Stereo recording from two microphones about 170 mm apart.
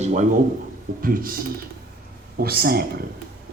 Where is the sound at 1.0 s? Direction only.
55° right (ahead or behind).